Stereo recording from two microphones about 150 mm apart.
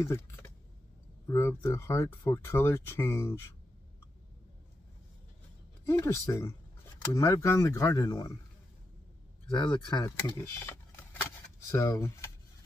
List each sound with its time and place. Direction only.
0.0 s speech: 20° left (ahead or behind)
5.9 s speech: 20° left (ahead or behind)
9.6 s speech: 30° left (ahead or behind)
10.0 s speech: 20° left (ahead or behind)